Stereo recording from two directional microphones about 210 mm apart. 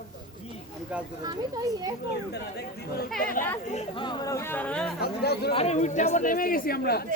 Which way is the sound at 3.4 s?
40° left (ahead or behind).